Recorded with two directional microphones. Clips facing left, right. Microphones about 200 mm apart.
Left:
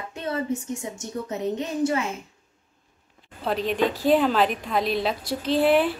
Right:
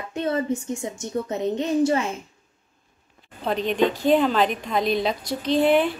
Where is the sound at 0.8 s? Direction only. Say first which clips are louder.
Right 3 dB; 35° right (ahead or behind).